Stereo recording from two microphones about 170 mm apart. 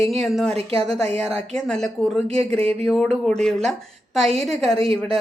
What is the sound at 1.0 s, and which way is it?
Speech, 40° right (ahead or behind).